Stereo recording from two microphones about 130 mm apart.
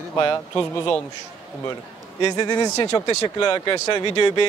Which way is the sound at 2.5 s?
35° left (ahead or behind).